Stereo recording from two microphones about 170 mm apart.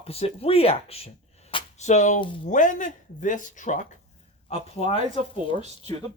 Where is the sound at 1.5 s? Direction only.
35° left (ahead or behind).